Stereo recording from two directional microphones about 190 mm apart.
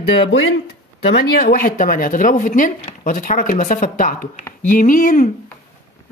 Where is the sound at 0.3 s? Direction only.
75° left (ahead or behind).